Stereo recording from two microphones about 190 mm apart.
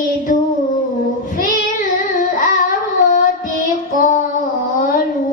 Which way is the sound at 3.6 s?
40° left (ahead or behind).